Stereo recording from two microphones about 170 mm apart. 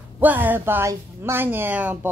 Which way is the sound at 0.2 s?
10° right (ahead or behind).